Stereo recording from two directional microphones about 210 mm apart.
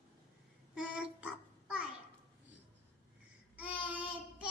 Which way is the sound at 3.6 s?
5° right (ahead or behind).